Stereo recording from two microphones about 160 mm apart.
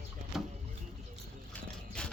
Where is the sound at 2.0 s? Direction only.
5° left (ahead or behind).